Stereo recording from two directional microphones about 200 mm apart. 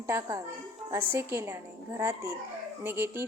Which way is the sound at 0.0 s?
15° right (ahead or behind).